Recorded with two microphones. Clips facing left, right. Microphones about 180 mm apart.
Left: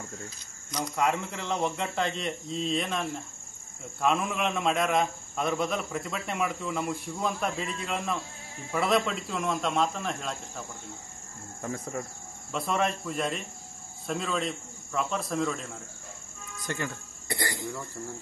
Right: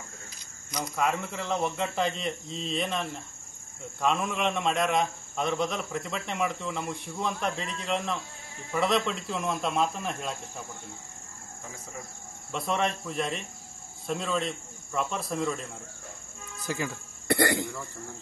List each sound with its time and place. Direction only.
0.9 s a man's voice: centre (ahead or behind)
11.6 s speech: 55° left (ahead or behind)
12.5 s a man's voice: centre (ahead or behind)
16.6 s a man's voice: 5° right (ahead or behind)
17.3 s speech: 65° right (ahead or behind)